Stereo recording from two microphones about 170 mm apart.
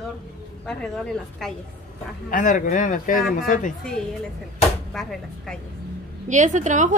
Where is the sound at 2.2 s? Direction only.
50° left (ahead or behind).